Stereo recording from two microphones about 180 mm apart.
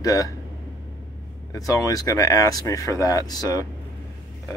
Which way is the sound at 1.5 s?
20° left (ahead or behind).